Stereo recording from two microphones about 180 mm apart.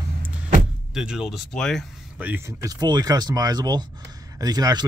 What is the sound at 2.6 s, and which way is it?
Speech, 20° right (ahead or behind).